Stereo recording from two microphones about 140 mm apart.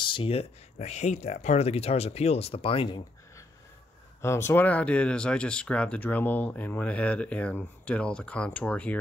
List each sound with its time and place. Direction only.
0.0 s speech: 40° left (ahead or behind)
4.2 s speech: 20° left (ahead or behind)